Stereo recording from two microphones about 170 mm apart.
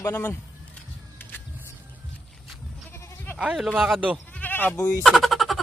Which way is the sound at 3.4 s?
5° right (ahead or behind).